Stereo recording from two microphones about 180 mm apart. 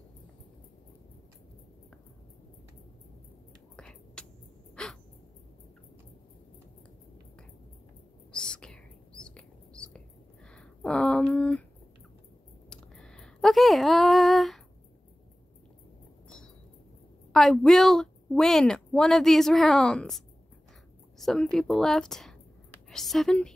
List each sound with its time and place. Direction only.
3.7 s whispering: 5° left (ahead or behind)
4.8 s crow: 5° left (ahead or behind)
8.3 s whispering: 5° left (ahead or behind)
10.5 s a sound: 5° left (ahead or behind)
12.6 s a sound: 5° left (ahead or behind)
17.3 s a woman's voice: centre (ahead or behind)